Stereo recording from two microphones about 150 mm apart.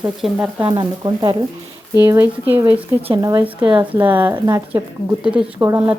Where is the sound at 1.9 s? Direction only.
15° right (ahead or behind).